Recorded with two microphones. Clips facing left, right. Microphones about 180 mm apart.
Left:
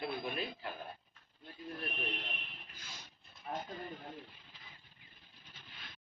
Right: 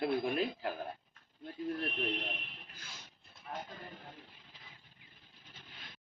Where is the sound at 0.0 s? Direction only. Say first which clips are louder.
Right 7 dB; 75° right (ahead or behind).